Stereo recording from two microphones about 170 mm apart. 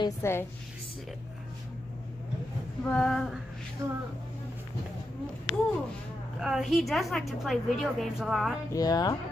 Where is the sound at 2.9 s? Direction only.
5° left (ahead or behind).